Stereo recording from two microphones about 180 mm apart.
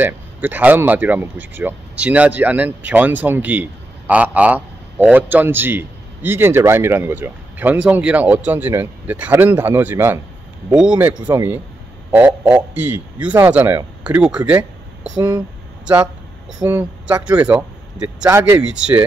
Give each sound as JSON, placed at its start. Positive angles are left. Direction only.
{"t": 0.0, "sound": "a man's voice", "side_deg": -10}
{"t": 15.1, "sound": "speech", "side_deg": -20}
{"t": 16.5, "sound": "a man's voice", "side_deg": -10}